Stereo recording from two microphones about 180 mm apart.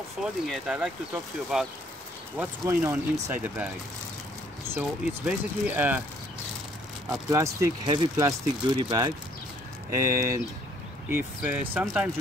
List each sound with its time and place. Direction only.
0.2 s speech: 5° right (ahead or behind)
4.7 s speech: 10° right (ahead or behind)
7.1 s speech: 15° right (ahead or behind); by 12.1 s centre (ahead or behind)